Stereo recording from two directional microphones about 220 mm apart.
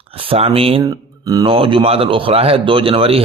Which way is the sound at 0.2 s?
25° right (ahead or behind).